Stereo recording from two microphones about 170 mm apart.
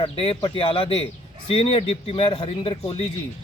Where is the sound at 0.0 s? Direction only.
30° left (ahead or behind).